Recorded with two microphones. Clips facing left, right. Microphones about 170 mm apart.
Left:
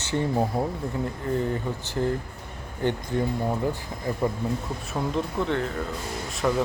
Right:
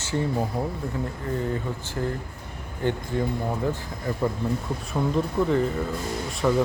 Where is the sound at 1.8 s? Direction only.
20° left (ahead or behind).